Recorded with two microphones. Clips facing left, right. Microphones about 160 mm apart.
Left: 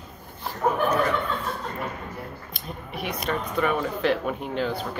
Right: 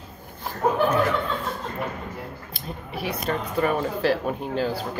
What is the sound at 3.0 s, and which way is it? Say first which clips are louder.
Speech: right 1 dB; 35° right (ahead or behind).